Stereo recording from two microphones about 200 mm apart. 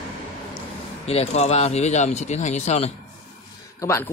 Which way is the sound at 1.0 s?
30° left (ahead or behind).